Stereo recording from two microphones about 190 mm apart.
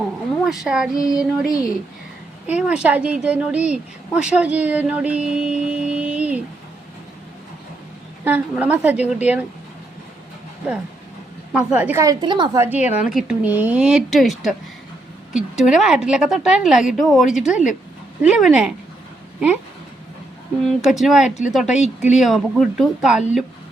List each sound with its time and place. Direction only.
0.4 s a woman's voice: centre (ahead or behind)
0.9 s child singing: 20° left (ahead or behind)
1.2 s a woman's voice: 5° right (ahead or behind)
8.2 s a woman's voice: 10° right (ahead or behind)
11.5 s a woman's voice: 10° right (ahead or behind); by 12.6 s 25° right (ahead or behind)
12.6 s a woman's voice: 10° right (ahead or behind)
20.7 s a woman's voice: centre (ahead or behind)